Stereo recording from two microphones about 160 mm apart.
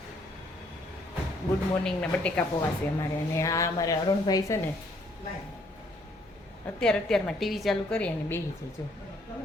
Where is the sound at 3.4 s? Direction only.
20° left (ahead or behind).